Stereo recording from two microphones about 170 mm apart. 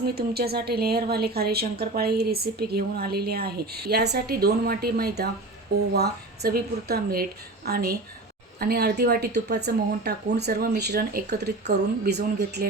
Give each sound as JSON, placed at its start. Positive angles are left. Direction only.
{"t": 0.1, "sound": "a woman's voice", "side_deg": -65}